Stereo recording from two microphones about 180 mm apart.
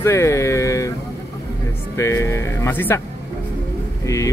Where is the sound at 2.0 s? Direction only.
15° left (ahead or behind).